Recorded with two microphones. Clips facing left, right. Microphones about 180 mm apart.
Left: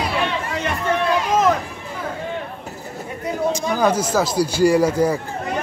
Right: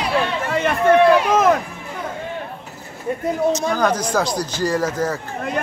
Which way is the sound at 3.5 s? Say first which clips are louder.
Even; 10° left (ahead or behind).